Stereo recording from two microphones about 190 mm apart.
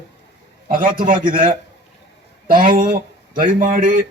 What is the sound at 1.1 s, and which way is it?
Speech, 25° right (ahead or behind).